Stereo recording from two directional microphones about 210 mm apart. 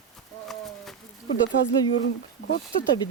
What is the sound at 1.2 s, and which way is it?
Speech, 60° left (ahead or behind).